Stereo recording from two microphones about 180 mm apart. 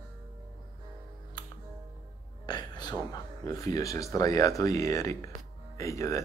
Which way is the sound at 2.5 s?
25° left (ahead or behind).